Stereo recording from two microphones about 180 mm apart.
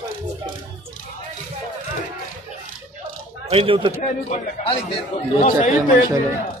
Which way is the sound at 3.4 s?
30° right (ahead or behind).